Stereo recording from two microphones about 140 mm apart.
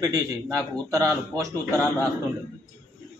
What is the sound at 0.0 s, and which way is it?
A man's voice, 25° right (ahead or behind).